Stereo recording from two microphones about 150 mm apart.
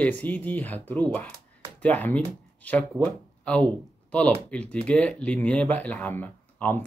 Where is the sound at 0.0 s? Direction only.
10° left (ahead or behind).